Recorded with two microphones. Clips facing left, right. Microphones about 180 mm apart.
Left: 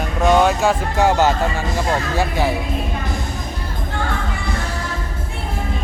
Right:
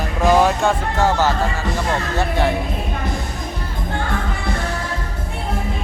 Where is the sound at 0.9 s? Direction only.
15° left (ahead or behind).